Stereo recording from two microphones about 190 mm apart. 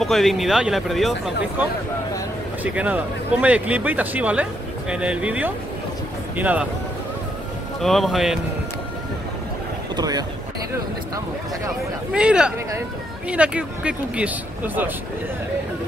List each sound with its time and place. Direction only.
0.0 s speech: centre (ahead or behind)
2.6 s speech: 5° right (ahead or behind)
7.8 s speech: centre (ahead or behind)
9.9 s speech: 20° right (ahead or behind)
12.1 s speech: 5° right (ahead or behind)